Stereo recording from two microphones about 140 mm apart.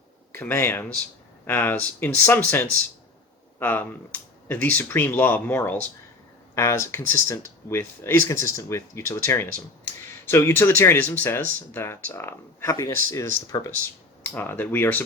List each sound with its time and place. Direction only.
0.3 s speech: 15° left (ahead or behind)